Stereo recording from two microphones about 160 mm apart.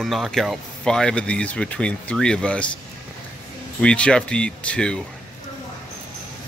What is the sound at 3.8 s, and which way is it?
A man's voice, 5° left (ahead or behind).